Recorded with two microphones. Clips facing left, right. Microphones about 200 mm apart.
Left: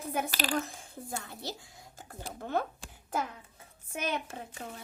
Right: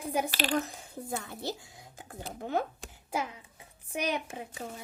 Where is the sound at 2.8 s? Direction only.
10° right (ahead or behind).